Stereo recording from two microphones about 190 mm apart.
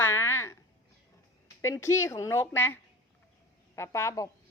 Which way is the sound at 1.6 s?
15° left (ahead or behind).